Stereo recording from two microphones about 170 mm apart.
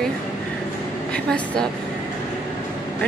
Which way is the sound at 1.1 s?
5° left (ahead or behind).